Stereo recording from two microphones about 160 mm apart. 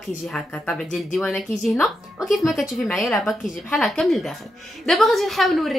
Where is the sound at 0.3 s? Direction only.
5° left (ahead or behind).